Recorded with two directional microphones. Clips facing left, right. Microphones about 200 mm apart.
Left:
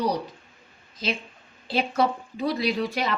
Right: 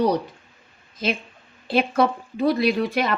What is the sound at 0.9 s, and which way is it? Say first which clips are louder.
Speech: right 4 dB; 55° right (ahead or behind).